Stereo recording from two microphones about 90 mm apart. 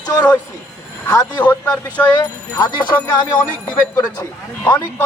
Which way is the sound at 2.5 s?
50° left (ahead or behind).